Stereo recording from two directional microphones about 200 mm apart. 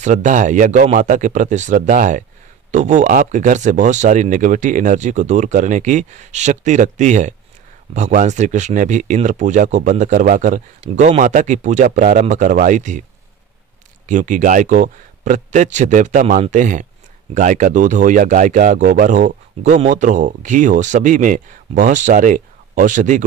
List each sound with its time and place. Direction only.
0.0 s speech: 40° right (ahead or behind)
14.0 s speech: 40° right (ahead or behind)